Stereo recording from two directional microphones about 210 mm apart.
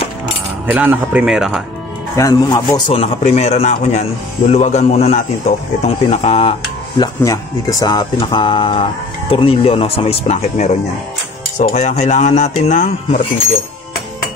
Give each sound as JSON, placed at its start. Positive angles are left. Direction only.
{"t": 0.7, "sound": "speech", "side_deg": -10}
{"t": 2.1, "sound": "speech", "side_deg": 15}
{"t": 2.7, "sound": "speech", "side_deg": 25}